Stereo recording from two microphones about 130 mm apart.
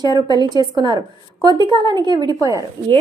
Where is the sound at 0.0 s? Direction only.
30° right (ahead or behind).